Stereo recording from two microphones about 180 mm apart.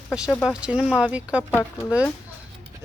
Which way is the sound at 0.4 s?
5° right (ahead or behind).